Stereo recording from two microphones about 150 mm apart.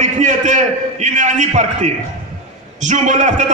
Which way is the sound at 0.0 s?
50° right (ahead or behind).